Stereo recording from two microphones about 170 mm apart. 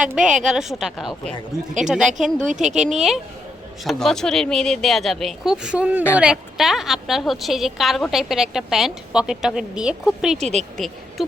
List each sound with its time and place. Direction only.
0.0 s a woman's voice: 5° right (ahead or behind)
10.3 s speech: 40° right (ahead or behind)
10.8 s a woman's voice: centre (ahead or behind)